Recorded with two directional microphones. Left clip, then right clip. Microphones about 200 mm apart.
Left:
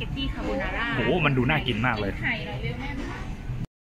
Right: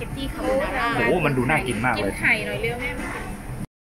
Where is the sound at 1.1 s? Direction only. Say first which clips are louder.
Right 3 dB; centre (ahead or behind).